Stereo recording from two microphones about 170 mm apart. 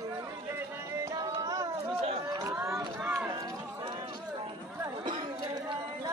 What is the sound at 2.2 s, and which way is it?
Run, 20° right (ahead or behind).